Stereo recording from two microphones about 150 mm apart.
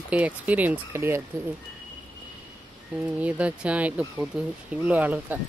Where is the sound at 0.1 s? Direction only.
10° right (ahead or behind).